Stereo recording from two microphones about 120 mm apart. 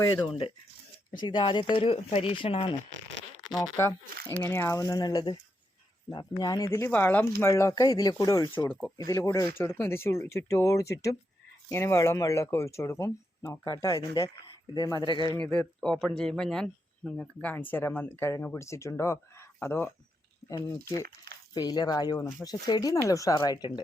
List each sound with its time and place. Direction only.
0.0 s speech: 40° left (ahead or behind)
4.2 s speech: 20° left (ahead or behind)
7.5 s speech: 30° left (ahead or behind)
15.4 s speech: 10° left (ahead or behind)
20.5 s speech: 30° left (ahead or behind)